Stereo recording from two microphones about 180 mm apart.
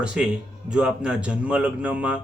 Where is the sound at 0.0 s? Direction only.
5° right (ahead or behind).